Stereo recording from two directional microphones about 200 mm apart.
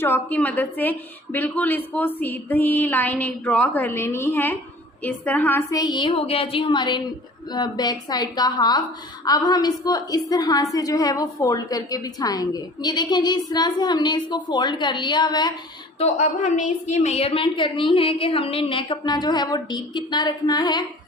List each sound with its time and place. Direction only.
0.0 s a woman's voice: 10° left (ahead or behind)
16.0 s a woman's voice: 35° left (ahead or behind)